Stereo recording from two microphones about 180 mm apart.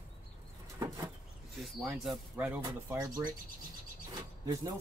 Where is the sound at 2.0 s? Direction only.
5° right (ahead or behind); by 3.3 s 20° right (ahead or behind).